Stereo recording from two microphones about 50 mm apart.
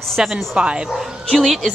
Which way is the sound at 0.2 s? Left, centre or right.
Centre.